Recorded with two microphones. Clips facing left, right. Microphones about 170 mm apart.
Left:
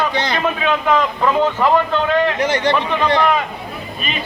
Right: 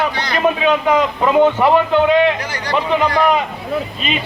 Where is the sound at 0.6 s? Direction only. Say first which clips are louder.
Even; 15° right (ahead or behind).